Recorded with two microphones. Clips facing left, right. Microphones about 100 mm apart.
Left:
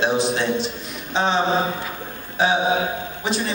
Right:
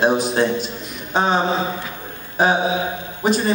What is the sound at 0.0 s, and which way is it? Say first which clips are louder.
A man's voice: right 3 dB; 45° right (ahead or behind).